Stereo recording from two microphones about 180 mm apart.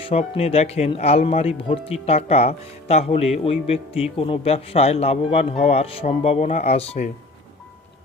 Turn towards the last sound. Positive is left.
turn(degrees=35)  # may be behind; listen again after turning